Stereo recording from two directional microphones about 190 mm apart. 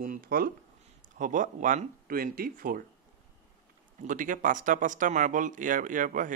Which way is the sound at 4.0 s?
45° right (ahead or behind).